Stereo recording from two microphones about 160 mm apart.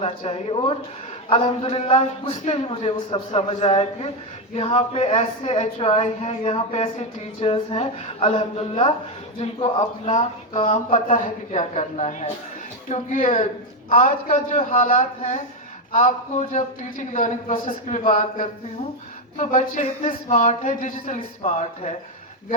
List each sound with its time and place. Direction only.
0.0 s a man's voice: 35° left (ahead or behind)
10.8 s speech: 55° left (ahead or behind)